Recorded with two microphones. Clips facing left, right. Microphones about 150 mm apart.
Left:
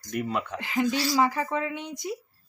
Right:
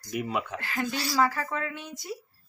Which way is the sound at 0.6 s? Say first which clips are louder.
Left 5 dB; 15° left (ahead or behind).